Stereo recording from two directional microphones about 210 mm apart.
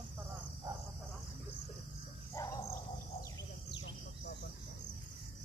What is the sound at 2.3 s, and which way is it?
Bird, 15° left (ahead or behind).